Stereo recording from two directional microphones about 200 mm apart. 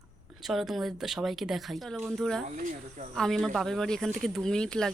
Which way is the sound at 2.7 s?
40° right (ahead or behind).